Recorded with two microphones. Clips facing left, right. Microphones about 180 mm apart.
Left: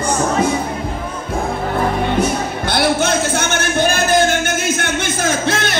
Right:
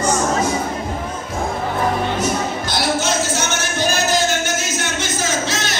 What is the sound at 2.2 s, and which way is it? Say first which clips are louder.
Music: left 3 dB; 60° left (ahead or behind).